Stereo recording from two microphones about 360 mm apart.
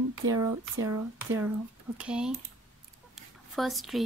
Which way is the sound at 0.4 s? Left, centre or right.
Right.